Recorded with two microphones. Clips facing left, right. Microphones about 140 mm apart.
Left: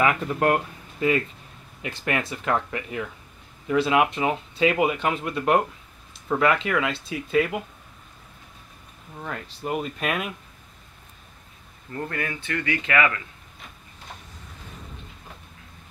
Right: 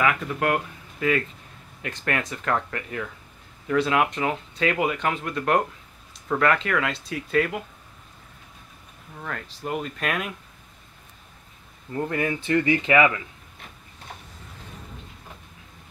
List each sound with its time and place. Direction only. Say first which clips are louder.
0.0 s speech: left 2 dB; 30° left (ahead or behind)
1.9 s speech: left 1 dB; 10° left (ahead or behind)
9.2 s speech: left 1 dB; 15° left (ahead or behind)
11.9 s speech: right 5 dB; 15° right (ahead or behind)